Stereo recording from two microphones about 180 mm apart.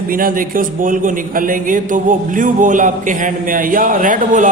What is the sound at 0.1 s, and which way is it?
A man's voice, 50° right (ahead or behind).